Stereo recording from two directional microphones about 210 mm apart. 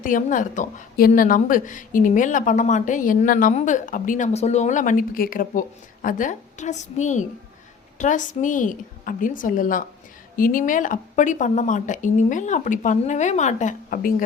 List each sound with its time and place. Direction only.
0.0 s a woman's voice: 40° left (ahead or behind)